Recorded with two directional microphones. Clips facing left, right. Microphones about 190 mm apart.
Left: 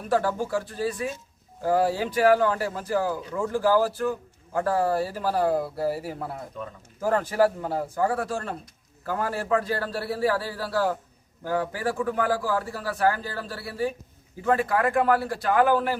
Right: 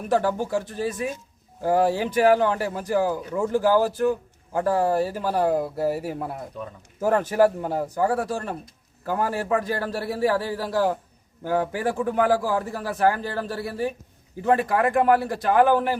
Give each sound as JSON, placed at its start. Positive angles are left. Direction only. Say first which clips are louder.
{"t": 0.1, "sound": "a man's voice", "louder": "right 2 dB", "side_deg": -20}